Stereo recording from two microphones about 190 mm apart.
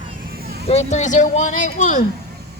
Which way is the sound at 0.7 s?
35° left (ahead or behind).